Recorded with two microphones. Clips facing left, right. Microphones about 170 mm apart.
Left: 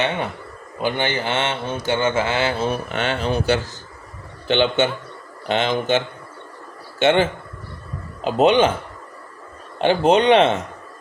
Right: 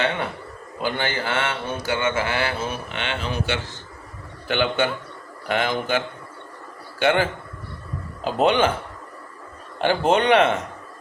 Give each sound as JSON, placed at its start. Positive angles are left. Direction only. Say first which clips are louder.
{"t": 0.8, "sound": "speech", "louder": "left 3 dB", "side_deg": 20}
{"t": 4.4, "sound": "speech", "louder": "left 4 dB", "side_deg": 25}
{"t": 7.0, "sound": "speech", "louder": "left 3 dB", "side_deg": 25}
{"t": 9.7, "sound": "speech", "louder": "left 3 dB", "side_deg": 20}